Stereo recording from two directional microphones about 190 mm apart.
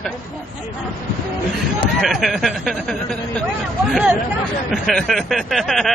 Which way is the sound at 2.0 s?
Centre (ahead or behind).